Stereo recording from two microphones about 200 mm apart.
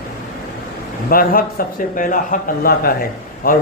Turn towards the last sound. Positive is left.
turn(degrees=45)  # may be behind; listen again after turning